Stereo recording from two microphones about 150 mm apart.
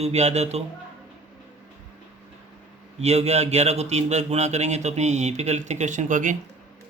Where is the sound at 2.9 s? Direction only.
45° right (ahead or behind).